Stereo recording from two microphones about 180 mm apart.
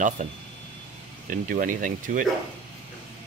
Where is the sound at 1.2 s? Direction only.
50° right (ahead or behind).